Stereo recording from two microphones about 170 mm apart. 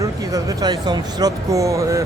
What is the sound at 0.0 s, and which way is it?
Speech, 20° right (ahead or behind).